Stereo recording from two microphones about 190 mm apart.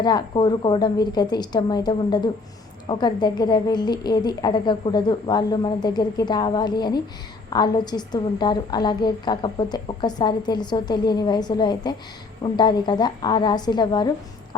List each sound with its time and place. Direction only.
0.0 s a woman's voice: 25° left (ahead or behind)